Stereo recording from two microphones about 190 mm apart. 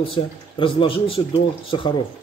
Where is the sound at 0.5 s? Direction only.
25° left (ahead or behind).